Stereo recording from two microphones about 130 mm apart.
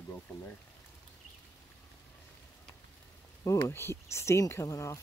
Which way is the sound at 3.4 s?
20° left (ahead or behind).